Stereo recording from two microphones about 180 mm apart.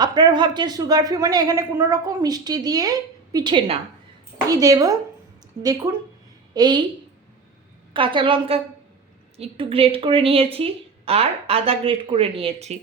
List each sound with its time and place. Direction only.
0.0 s speech: 25° right (ahead or behind)
6.5 s a woman's voice: 25° right (ahead or behind)
7.9 s a woman's voice: 30° right (ahead or behind)